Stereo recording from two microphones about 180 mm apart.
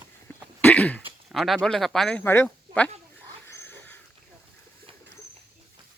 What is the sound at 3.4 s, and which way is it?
Pig, 10° left (ahead or behind).